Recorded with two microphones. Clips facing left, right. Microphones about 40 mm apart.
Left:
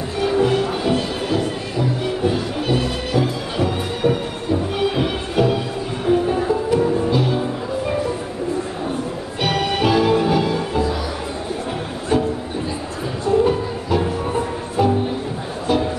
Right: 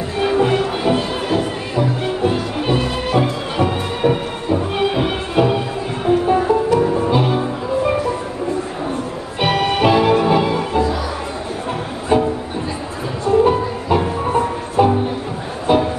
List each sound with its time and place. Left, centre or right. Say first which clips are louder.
0.2 s music: right 2 dB; right
9.4 s music: right 4 dB; right
12.1 s music: right 3 dB; right
13.3 s music: right 3 dB; right